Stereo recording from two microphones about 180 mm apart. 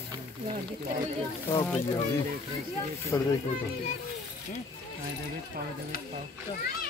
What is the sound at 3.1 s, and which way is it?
Speech, 20° left (ahead or behind).